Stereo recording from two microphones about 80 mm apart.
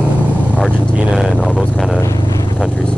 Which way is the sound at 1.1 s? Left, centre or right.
Centre.